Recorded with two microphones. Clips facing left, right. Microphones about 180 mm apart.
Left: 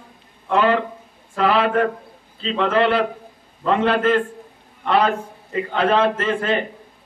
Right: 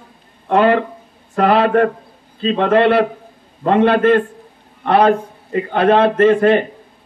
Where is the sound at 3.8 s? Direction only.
60° right (ahead or behind).